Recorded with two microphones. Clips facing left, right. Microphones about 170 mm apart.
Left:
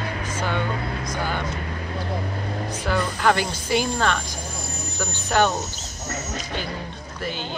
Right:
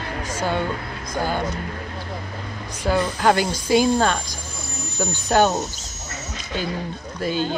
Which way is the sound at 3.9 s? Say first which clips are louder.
Right 3 dB; 40° right (ahead or behind).